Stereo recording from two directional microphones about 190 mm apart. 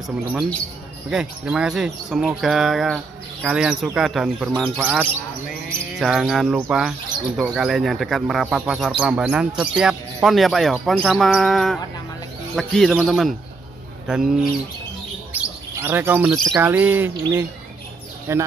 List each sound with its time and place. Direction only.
0.3 s speech: 5° right (ahead or behind)
15.3 s bird: 10° right (ahead or behind)
16.3 s speech: centre (ahead or behind)
16.6 s bird: 10° right (ahead or behind)